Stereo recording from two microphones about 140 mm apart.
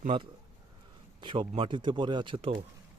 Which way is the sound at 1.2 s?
35° right (ahead or behind).